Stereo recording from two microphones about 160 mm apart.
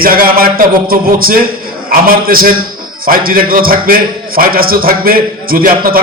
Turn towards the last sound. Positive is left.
turn(degrees=-65)  # may be behind; listen again after turning